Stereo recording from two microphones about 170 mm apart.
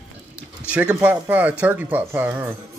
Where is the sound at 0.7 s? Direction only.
5° right (ahead or behind).